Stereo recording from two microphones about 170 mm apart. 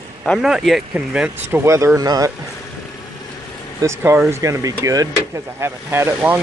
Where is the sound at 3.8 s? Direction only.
15° right (ahead or behind).